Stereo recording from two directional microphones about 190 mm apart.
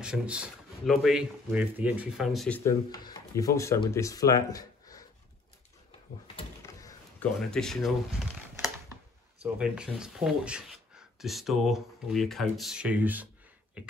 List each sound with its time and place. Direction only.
0.0 s speech: 5° right (ahead or behind)
2.6 s speech: 20° left (ahead or behind)
6.6 s a sound: 15° left (ahead or behind)
7.3 s speech: centre (ahead or behind)
9.6 s speech: 5° right (ahead or behind)
13.8 s a sound: 5° right (ahead or behind)